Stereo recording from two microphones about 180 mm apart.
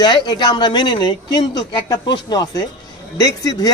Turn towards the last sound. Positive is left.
turn(degrees=20)  # may be behind; listen again after turning